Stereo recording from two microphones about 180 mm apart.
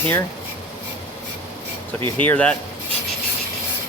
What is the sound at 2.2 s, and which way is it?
Speech, 10° left (ahead or behind).